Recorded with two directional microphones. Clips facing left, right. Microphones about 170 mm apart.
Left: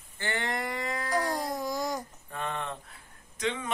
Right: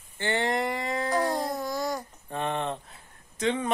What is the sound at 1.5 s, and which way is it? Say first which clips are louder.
Babbling: right 1 dB; 15° left (ahead or behind).